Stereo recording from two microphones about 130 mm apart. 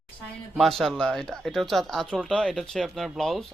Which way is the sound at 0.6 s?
Centre (ahead or behind).